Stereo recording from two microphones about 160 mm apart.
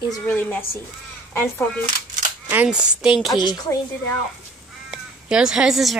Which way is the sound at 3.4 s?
25° left (ahead or behind).